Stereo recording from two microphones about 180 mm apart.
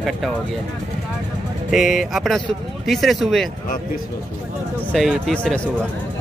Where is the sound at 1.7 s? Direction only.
Centre (ahead or behind).